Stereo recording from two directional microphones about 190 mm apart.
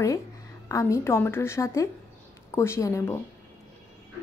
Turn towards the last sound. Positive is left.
turn(degrees=15)  # may be behind; listen again after turning